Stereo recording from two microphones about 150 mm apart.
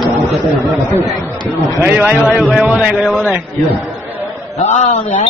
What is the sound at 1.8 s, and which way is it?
A man's voice, 15° right (ahead or behind).